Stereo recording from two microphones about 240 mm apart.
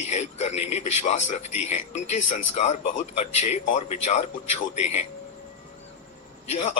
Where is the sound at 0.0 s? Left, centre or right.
Left.